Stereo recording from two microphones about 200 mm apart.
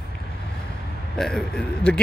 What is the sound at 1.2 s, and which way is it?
Speech, centre (ahead or behind).